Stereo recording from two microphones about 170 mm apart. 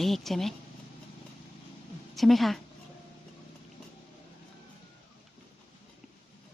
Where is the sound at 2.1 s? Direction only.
Centre (ahead or behind).